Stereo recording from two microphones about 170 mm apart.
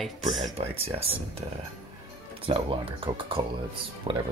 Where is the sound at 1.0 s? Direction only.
35° right (ahead or behind).